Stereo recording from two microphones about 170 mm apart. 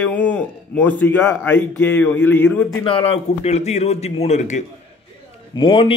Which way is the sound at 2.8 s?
30° left (ahead or behind).